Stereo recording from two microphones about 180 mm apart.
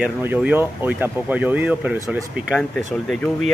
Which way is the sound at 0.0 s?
10° right (ahead or behind).